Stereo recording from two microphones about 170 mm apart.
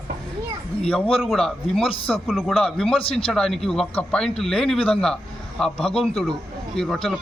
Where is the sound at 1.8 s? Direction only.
35° left (ahead or behind).